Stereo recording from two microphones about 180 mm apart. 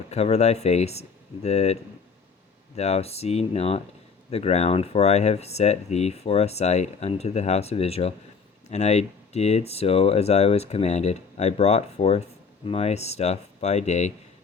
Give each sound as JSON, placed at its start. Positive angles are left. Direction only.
{"t": 0.1, "sound": "speech", "side_deg": 35}